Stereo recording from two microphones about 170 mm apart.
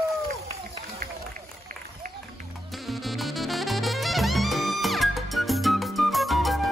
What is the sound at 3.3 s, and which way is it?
Music, centre (ahead or behind).